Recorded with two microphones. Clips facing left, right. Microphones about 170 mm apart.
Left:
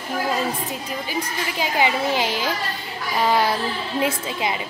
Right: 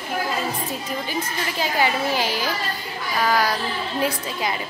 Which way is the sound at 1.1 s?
15° left (ahead or behind).